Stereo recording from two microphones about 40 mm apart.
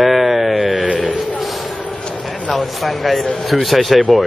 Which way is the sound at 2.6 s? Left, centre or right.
Centre.